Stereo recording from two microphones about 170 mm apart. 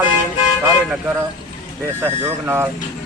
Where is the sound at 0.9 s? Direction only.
5° right (ahead or behind).